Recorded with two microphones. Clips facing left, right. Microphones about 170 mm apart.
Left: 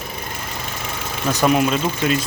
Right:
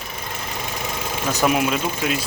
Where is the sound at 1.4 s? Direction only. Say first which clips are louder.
Left 3 dB; 5° right (ahead or behind).